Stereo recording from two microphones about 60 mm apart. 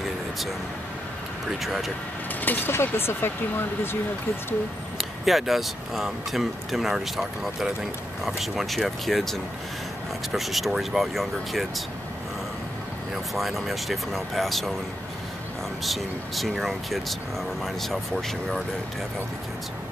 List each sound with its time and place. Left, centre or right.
1.6 s speech: centre
2.4 s speech: left
2.7 s speech: left
4.9 s speech: centre
13.1 s speech: centre
15.8 s speech: centre